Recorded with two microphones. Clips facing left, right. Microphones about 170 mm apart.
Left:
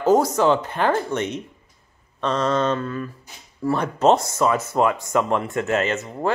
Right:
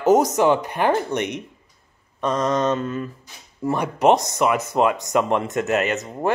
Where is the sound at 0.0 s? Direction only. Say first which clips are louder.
Right 1 dB; 20° right (ahead or behind).